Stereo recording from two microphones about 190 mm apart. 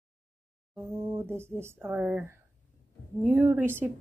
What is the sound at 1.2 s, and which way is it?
Speech, 10° right (ahead or behind).